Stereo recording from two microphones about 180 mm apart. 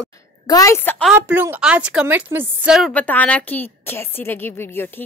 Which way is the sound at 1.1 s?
10° right (ahead or behind).